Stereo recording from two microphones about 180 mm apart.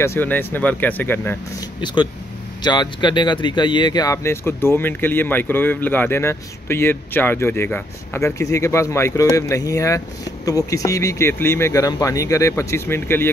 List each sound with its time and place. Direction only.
0.0 s speech: 10° left (ahead or behind)
2.6 s speech: 25° left (ahead or behind)